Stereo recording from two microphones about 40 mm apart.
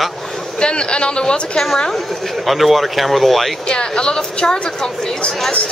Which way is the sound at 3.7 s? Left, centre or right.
Left.